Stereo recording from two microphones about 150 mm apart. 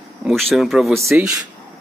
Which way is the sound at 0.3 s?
Centre (ahead or behind).